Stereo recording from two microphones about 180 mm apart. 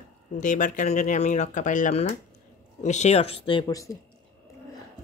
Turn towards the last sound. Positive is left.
turn(degrees=20)  # may be behind; listen again after turning